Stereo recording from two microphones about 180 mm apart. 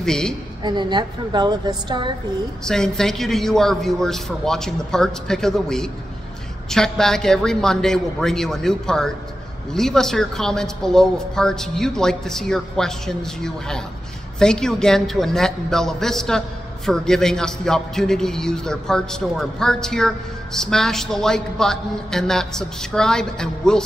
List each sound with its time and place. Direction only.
0.0 s a woman's voice: 5° left (ahead or behind)
0.7 s a woman's voice: 25° right (ahead or behind)
2.6 s a man's voice: 5° left (ahead or behind)